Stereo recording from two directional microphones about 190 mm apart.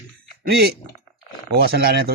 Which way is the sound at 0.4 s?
55° right (ahead or behind).